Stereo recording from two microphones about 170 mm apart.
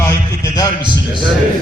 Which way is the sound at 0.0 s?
20° left (ahead or behind).